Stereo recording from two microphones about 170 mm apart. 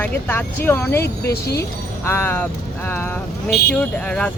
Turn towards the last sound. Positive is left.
turn(degrees=5)  # may be behind; listen again after turning